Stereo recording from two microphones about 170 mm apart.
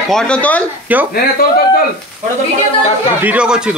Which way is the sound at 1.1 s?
65° left (ahead or behind).